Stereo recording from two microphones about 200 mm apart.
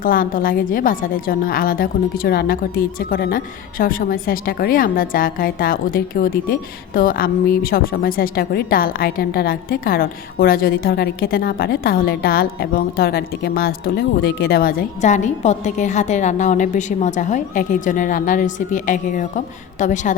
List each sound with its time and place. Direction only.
0.0 s a woman's voice: 45° left (ahead or behind)